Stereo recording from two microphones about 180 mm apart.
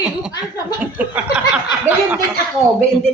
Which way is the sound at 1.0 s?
10° right (ahead or behind).